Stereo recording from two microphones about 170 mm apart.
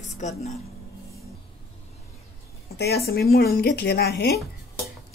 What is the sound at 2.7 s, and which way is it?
Speech, 70° left (ahead or behind).